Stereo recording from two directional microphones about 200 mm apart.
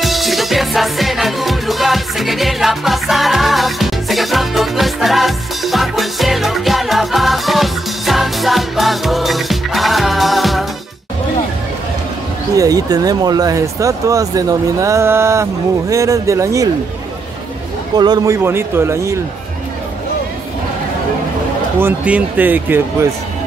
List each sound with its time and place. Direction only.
0.0 s music: centre (ahead or behind)
12.5 s speech: 20° right (ahead or behind)
17.9 s speech: 20° right (ahead or behind)
21.7 s speech: 10° right (ahead or behind)